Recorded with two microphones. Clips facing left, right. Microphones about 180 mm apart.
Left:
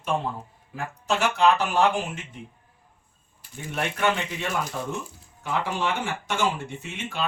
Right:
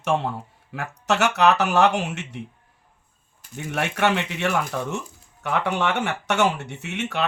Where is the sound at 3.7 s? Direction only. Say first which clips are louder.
Right 3 dB; 75° right (ahead or behind).